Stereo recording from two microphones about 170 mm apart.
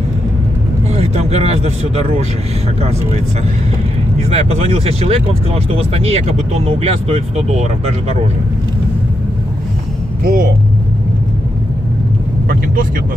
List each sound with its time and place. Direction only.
0.9 s speech: 40° right (ahead or behind)
4.2 s speech: 40° right (ahead or behind)
10.2 s speech: 55° right (ahead or behind)